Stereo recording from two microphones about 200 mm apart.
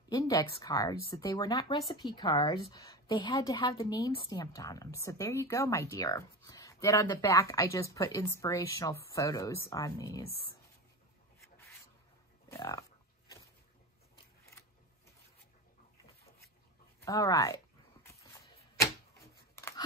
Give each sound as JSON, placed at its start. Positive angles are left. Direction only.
{"t": 0.1, "sound": "speech", "side_deg": 15}
{"t": 12.4, "sound": "speech", "side_deg": 15}
{"t": 17.0, "sound": "speech", "side_deg": 15}
{"t": 18.8, "sound": "a sound", "side_deg": 15}